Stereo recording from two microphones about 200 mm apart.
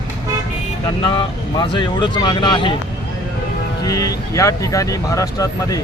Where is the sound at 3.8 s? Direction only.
20° left (ahead or behind).